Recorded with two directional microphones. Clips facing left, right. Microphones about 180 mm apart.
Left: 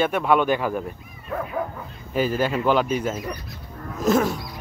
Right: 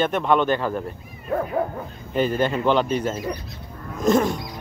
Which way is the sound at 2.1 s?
5° left (ahead or behind).